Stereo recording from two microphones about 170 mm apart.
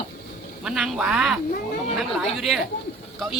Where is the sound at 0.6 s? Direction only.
5° right (ahead or behind).